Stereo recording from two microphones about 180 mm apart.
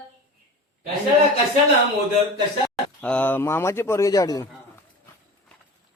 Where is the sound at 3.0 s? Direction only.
10° left (ahead or behind).